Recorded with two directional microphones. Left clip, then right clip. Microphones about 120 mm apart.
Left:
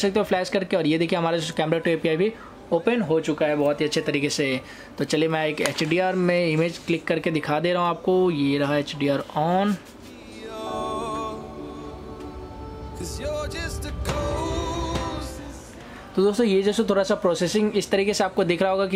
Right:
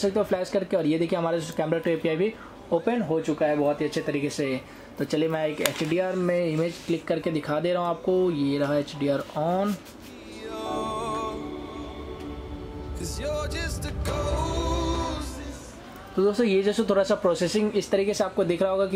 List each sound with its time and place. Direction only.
0.0 s speech: 60° left (ahead or behind); by 2.8 s 35° left (ahead or behind)
2.8 s speech: 60° left (ahead or behind)
3.4 s speech: 45° left (ahead or behind)
4.9 s speech: 40° left (ahead or behind)
6.6 s speech: 55° left (ahead or behind)
10.5 s music: centre (ahead or behind)
13.0 s music: centre (ahead or behind)
16.2 s speech: 35° left (ahead or behind)
18.2 s speech: 60° left (ahead or behind)